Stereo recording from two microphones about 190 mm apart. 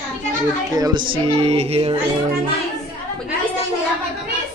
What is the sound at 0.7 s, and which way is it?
Speech, 20° right (ahead or behind).